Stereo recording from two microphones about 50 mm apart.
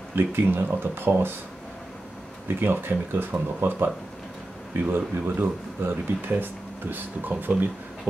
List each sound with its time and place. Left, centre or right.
0.1 s speech: right
2.4 s speech: right